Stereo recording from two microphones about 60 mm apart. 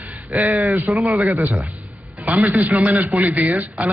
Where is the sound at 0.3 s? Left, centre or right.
Right.